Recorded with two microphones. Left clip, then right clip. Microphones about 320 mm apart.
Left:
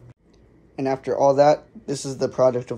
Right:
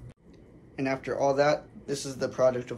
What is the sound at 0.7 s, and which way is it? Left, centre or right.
Speech, centre.